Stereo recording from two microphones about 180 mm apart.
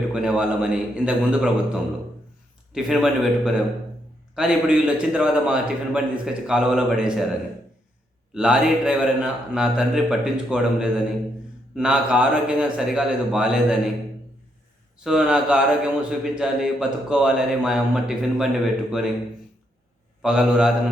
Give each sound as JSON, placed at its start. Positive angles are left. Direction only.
{"t": 0.1, "sound": "a man's voice", "side_deg": -5}
{"t": 8.3, "sound": "a man's voice", "side_deg": -5}
{"t": 14.9, "sound": "a man's voice", "side_deg": -5}
{"t": 20.2, "sound": "a man's voice", "side_deg": -5}